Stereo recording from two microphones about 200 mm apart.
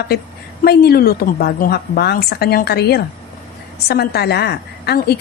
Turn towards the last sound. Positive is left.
turn(degrees=55)  # may be behind; listen again after turning